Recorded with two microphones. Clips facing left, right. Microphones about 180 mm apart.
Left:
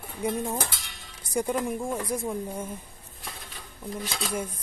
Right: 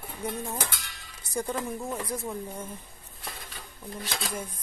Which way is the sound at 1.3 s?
15° left (ahead or behind).